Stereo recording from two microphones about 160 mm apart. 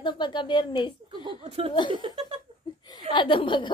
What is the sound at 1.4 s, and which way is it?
Speech, 35° right (ahead or behind).